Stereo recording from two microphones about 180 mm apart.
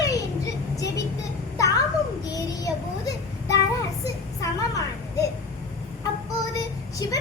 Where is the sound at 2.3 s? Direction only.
20° left (ahead or behind).